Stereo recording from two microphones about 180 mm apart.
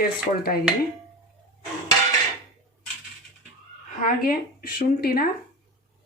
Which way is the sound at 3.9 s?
50° left (ahead or behind).